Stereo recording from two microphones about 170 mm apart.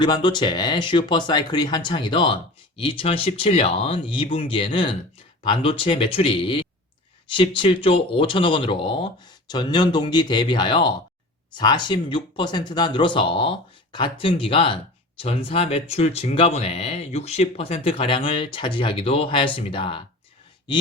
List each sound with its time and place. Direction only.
0.0 s speech: 25° left (ahead or behind)